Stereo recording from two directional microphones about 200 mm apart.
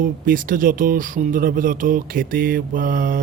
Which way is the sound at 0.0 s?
45° right (ahead or behind).